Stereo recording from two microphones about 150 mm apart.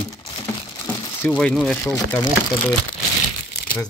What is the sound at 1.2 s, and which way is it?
Speech, 5° left (ahead or behind).